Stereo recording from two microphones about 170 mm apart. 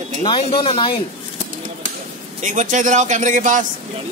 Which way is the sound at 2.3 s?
45° right (ahead or behind).